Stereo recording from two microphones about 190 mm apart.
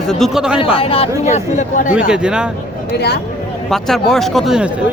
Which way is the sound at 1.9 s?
5° right (ahead or behind).